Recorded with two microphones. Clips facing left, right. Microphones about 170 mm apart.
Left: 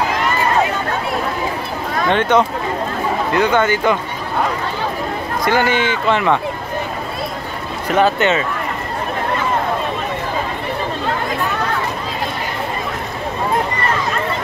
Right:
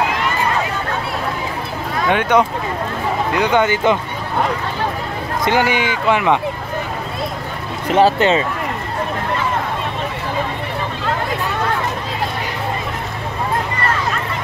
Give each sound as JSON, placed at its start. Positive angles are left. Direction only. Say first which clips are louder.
{"t": 2.0, "sound": "speech", "louder": "even", "side_deg": -10}
{"t": 5.4, "sound": "speech", "louder": "even", "side_deg": -15}
{"t": 7.9, "sound": "speech", "louder": "right 2 dB", "side_deg": -30}